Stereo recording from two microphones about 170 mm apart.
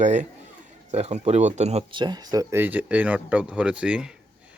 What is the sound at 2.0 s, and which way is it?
Speech, 25° right (ahead or behind).